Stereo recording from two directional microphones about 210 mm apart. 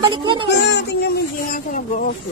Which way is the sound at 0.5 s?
55° left (ahead or behind).